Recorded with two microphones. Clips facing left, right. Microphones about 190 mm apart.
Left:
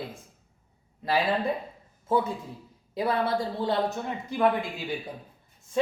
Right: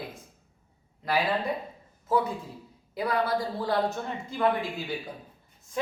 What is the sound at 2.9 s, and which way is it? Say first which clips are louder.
Speech: left 1 dB; 25° left (ahead or behind).